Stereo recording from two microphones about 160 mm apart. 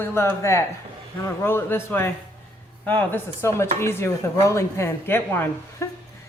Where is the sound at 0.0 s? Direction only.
15° left (ahead or behind).